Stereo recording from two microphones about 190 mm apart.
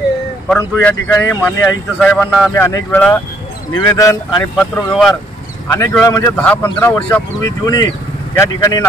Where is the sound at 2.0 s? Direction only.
5° left (ahead or behind).